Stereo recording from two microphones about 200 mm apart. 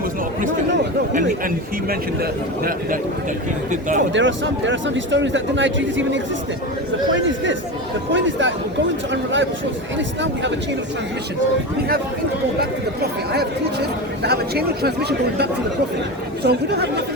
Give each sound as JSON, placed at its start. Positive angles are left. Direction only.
{"t": 3.7, "sound": "speech", "side_deg": -40}
{"t": 4.1, "sound": "a man's voice", "side_deg": -65}
{"t": 8.1, "sound": "a man's voice", "side_deg": -70}
{"t": 12.5, "sound": "speech", "side_deg": -50}
{"t": 16.4, "sound": "speech", "side_deg": -55}